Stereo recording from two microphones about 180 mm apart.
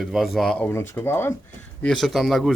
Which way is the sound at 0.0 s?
Centre (ahead or behind).